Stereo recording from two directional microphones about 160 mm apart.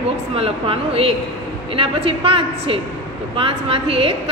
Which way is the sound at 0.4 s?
35° right (ahead or behind).